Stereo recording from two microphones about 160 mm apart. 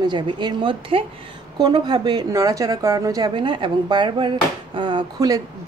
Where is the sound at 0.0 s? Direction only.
30° right (ahead or behind).